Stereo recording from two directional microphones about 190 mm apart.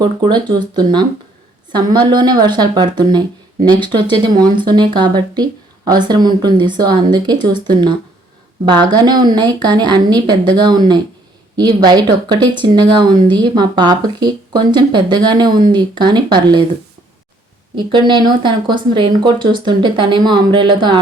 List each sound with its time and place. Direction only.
0.0 s speech: 25° right (ahead or behind)
8.6 s speech: 25° right (ahead or behind)
17.7 s speech: 25° right (ahead or behind)